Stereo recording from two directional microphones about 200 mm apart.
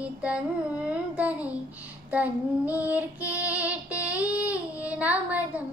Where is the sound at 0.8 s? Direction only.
5° right (ahead or behind).